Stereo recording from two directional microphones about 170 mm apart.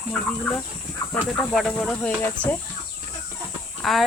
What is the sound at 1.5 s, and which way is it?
Speech, 5° left (ahead or behind).